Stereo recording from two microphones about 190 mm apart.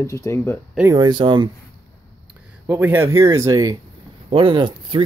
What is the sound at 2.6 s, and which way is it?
Speech, 10° right (ahead or behind).